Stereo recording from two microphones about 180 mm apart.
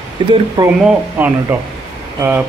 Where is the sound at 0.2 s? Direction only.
25° right (ahead or behind).